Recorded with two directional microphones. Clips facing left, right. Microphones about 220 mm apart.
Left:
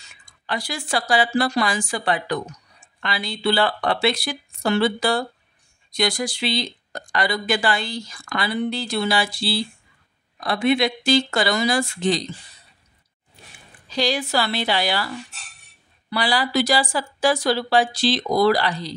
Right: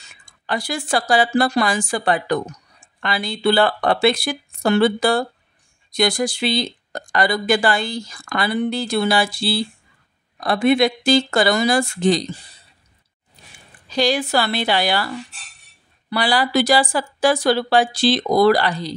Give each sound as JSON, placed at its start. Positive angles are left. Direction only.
{"t": 0.5, "sound": "a woman's voice", "side_deg": -50}
{"t": 13.9, "sound": "a woman's voice", "side_deg": -55}
{"t": 16.1, "sound": "a woman's voice", "side_deg": -55}